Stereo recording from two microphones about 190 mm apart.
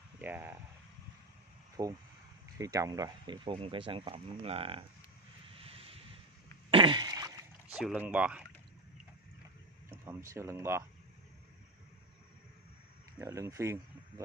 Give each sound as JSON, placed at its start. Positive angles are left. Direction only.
{"t": 0.2, "sound": "speech", "side_deg": -10}
{"t": 1.8, "sound": "speech", "side_deg": -20}
{"t": 5.5, "sound": "vehicle", "side_deg": -30}
{"t": 6.7, "sound": "a sound", "side_deg": -25}
{"t": 7.7, "sound": "speech", "side_deg": -5}
{"t": 9.8, "sound": "speech", "side_deg": -15}
{"t": 13.2, "sound": "speech", "side_deg": -15}